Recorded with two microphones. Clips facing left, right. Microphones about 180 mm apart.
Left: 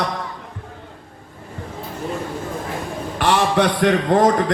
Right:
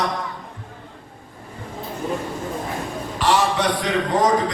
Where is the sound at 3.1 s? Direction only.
60° left (ahead or behind).